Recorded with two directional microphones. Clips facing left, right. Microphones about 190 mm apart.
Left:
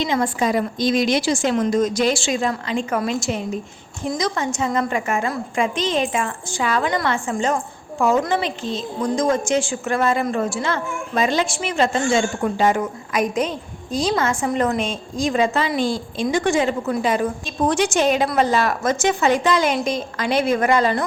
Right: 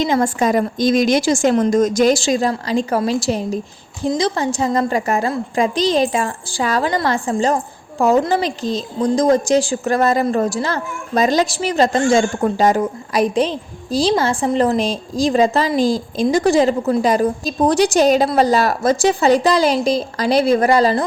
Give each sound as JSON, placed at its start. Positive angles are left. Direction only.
{"t": 0.0, "sound": "a woman's voice", "side_deg": -45}